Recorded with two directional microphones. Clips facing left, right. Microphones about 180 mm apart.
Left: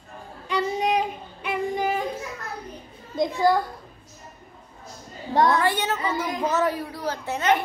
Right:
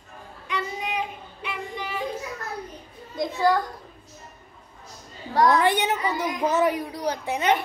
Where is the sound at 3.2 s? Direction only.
15° left (ahead or behind).